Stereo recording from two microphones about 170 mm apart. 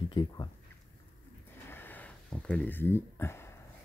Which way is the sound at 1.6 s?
10° left (ahead or behind).